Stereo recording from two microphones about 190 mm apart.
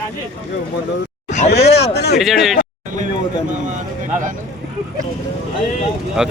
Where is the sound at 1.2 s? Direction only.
40° left (ahead or behind).